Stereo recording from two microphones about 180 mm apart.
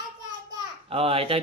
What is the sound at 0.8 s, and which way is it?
Speech, 30° right (ahead or behind).